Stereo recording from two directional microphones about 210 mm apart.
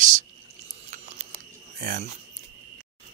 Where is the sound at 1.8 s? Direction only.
40° right (ahead or behind).